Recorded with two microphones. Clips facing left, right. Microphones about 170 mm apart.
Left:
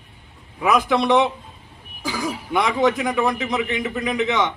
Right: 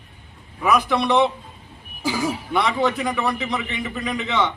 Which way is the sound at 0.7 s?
20° left (ahead or behind).